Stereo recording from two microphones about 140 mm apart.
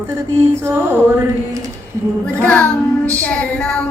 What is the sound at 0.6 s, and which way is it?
Music, 15° right (ahead or behind).